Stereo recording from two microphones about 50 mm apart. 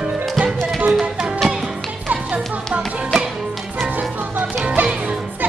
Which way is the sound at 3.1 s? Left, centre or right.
Centre.